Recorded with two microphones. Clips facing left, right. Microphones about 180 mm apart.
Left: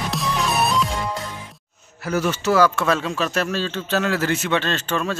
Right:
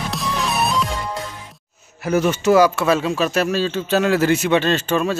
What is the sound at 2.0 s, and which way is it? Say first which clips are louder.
Speech: right 4 dB; 20° right (ahead or behind).